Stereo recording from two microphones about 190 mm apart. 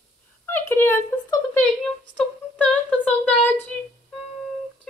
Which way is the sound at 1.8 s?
5° left (ahead or behind).